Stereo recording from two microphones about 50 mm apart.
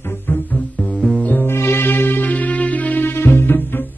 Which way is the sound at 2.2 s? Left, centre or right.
Left.